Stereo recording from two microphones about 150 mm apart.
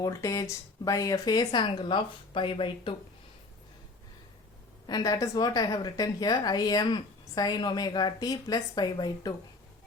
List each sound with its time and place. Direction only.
0.0 s a woman's voice: 20° left (ahead or behind)
4.9 s a woman's voice: 25° left (ahead or behind)